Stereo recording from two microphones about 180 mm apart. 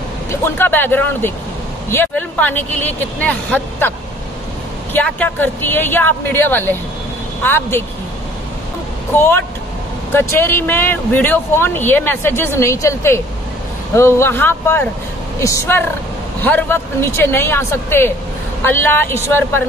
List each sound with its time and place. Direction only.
0.3 s speech: 10° left (ahead or behind)
4.9 s speech: 10° left (ahead or behind)
9.1 s speech: 10° left (ahead or behind)